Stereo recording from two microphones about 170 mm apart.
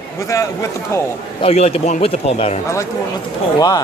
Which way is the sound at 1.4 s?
35° left (ahead or behind).